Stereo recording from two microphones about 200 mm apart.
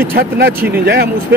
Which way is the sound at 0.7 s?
55° right (ahead or behind).